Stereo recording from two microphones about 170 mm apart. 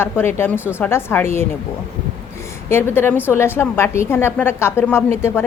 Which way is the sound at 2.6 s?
15° left (ahead or behind).